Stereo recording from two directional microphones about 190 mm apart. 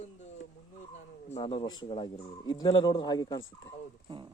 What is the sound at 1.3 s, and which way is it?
Speech, 30° left (ahead or behind).